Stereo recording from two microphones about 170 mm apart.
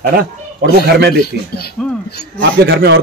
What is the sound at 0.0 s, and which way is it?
Speech, 70° right (ahead or behind).